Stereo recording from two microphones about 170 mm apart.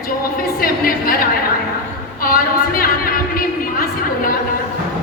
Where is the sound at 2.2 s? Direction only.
60° left (ahead or behind).